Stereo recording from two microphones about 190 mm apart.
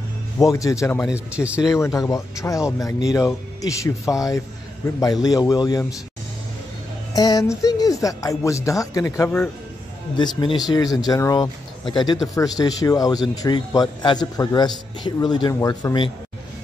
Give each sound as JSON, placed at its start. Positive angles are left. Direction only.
{"t": 0.4, "sound": "speech", "side_deg": 15}
{"t": 1.1, "sound": "speech", "side_deg": -5}
{"t": 1.7, "sound": "a man's voice", "side_deg": 15}
{"t": 7.2, "sound": "a man's voice", "side_deg": 20}